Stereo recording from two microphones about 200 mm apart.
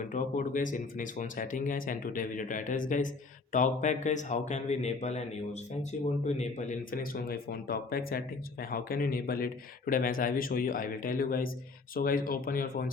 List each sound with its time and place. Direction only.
0.1 s speech: 40° left (ahead or behind)